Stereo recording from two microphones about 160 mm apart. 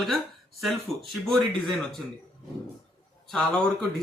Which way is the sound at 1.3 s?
Centre (ahead or behind).